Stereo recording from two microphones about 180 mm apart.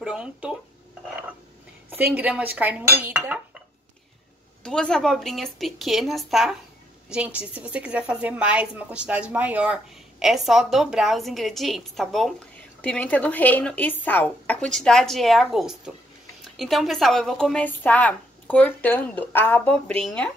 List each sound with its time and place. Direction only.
0.0 s a sound: 5° right (ahead or behind)
2.0 s dishes: 10° right (ahead or behind)
4.6 s a woman's voice: 5° left (ahead or behind)